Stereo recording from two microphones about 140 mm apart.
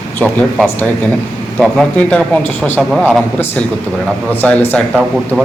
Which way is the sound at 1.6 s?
5° left (ahead or behind).